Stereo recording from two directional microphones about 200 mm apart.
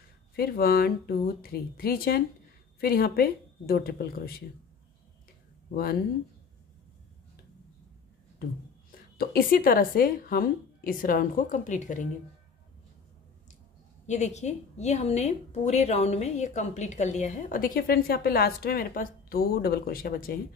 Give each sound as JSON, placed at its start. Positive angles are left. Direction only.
{"t": 0.4, "sound": "a woman's voice", "side_deg": 50}
{"t": 9.2, "sound": "a woman's voice", "side_deg": 45}
{"t": 14.0, "sound": "a woman's voice", "side_deg": 35}